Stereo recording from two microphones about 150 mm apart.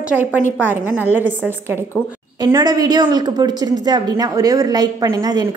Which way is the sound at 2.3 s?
25° right (ahead or behind).